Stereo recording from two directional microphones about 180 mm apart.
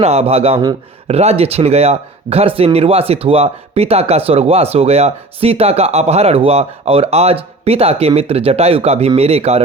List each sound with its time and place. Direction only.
0.0 s speech: 35° right (ahead or behind)